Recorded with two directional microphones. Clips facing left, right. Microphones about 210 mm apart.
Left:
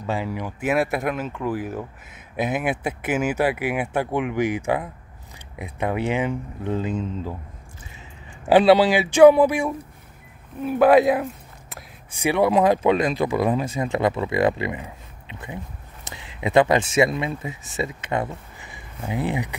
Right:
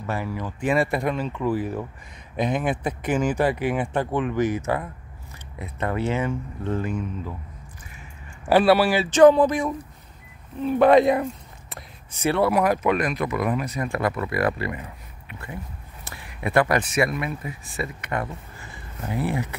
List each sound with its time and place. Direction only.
0.0 s speech: 15° left (ahead or behind)
8.5 s speech: 20° left (ahead or behind)